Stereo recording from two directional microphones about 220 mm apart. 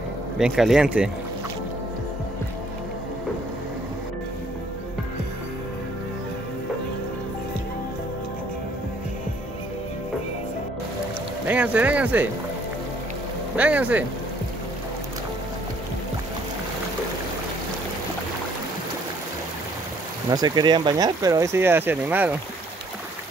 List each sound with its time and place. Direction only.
0.4 s speech: centre (ahead or behind)
11.4 s speech: 5° right (ahead or behind)
13.6 s speech: 5° right (ahead or behind)
20.2 s speech: 15° right (ahead or behind)